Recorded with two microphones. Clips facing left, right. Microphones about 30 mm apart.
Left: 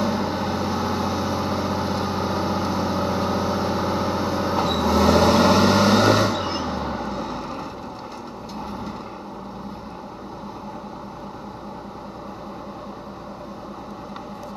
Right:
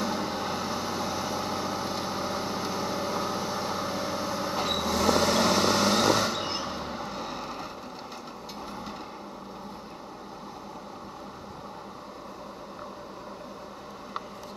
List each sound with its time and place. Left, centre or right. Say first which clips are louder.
0.0 s vehicle: left 6 dB; centre
6.3 s vehicle: left 6 dB; centre